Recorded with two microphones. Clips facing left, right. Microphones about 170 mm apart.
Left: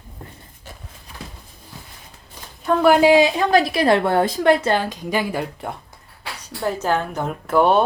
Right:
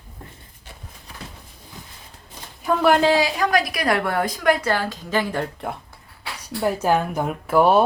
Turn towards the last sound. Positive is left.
turn(degrees=-5)  # may be behind; listen again after turning